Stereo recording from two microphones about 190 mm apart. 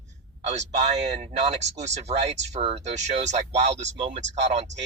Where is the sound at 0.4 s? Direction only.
35° right (ahead or behind).